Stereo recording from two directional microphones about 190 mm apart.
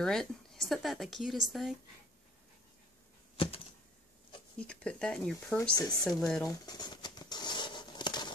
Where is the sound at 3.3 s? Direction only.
30° left (ahead or behind).